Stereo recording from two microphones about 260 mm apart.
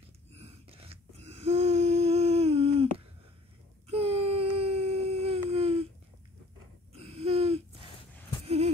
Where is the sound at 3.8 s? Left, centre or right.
Right.